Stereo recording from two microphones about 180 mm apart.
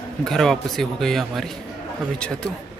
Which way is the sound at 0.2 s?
Centre (ahead or behind).